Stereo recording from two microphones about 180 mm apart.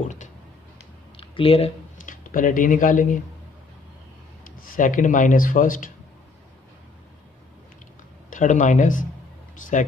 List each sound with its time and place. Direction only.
1.1 s a sound: 30° left (ahead or behind)
2.0 s speech: 50° left (ahead or behind)
4.6 s speech: 45° left (ahead or behind)
8.3 s speech: 45° left (ahead or behind)